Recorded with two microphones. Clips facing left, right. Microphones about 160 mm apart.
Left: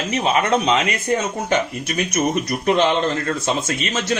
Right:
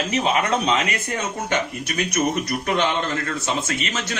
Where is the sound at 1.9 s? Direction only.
25° left (ahead or behind).